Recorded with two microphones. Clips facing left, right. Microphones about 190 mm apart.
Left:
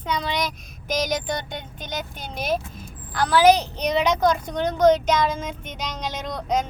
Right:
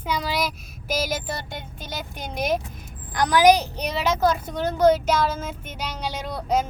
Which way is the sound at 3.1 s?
15° right (ahead or behind).